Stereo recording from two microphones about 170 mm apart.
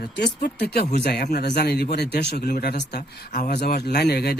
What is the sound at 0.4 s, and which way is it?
Speech, 70° left (ahead or behind).